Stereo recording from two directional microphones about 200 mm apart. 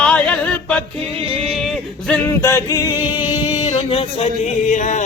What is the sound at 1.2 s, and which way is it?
Yodeling, 30° right (ahead or behind).